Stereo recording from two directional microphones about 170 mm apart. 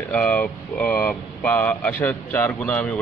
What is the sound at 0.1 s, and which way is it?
Speech, 10° left (ahead or behind).